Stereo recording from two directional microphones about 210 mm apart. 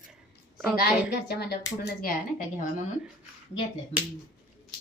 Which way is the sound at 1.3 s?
50° left (ahead or behind).